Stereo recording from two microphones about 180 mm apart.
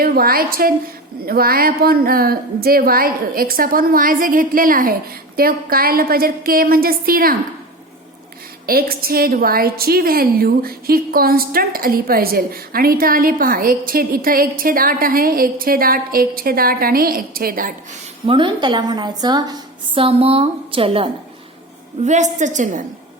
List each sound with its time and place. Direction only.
0.0 s a woman's voice: 55° right (ahead or behind)
8.6 s a woman's voice: 55° right (ahead or behind)
18.3 s a woman's voice: 25° right (ahead or behind)
22.0 s a woman's voice: 40° right (ahead or behind)